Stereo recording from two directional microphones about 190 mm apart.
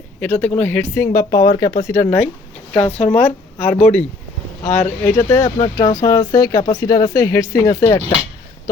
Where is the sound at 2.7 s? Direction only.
35° left (ahead or behind).